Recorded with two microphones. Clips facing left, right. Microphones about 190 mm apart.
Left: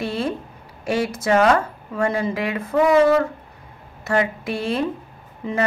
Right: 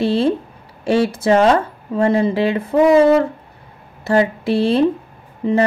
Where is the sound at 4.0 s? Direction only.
30° right (ahead or behind).